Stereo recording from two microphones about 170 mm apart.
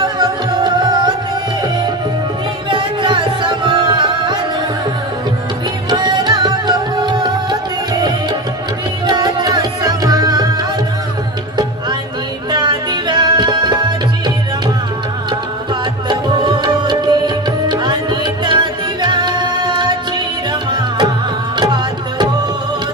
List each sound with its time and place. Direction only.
0.0 s music: 25° right (ahead or behind)
2.7 s music: 30° right (ahead or behind)
5.9 s music: 25° right (ahead or behind)
9.0 s tabla: 25° right (ahead or behind)
12.4 s music: 25° right (ahead or behind)
16.1 s music: 25° right (ahead or behind)
21.5 s music: 25° right (ahead or behind)